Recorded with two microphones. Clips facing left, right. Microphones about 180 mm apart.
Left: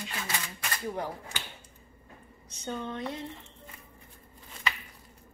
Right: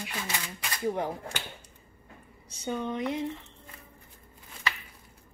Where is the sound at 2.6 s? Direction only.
15° right (ahead or behind).